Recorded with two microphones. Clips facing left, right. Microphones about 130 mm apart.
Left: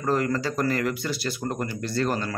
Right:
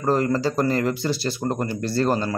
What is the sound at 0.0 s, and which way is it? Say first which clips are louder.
Speech: right 4 dB; 30° right (ahead or behind).